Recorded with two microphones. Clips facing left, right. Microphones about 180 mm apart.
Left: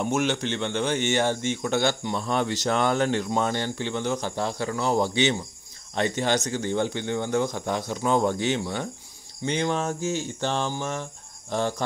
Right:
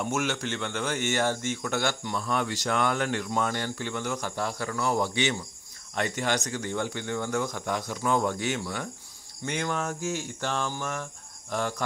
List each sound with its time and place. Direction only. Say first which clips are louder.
0.0 s speech: left 4 dB; 20° left (ahead or behind)